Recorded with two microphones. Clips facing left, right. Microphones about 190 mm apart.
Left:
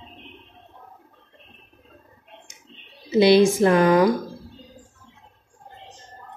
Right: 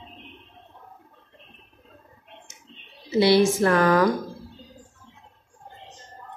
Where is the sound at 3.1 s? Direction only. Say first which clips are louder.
Left 3 dB; 20° left (ahead or behind).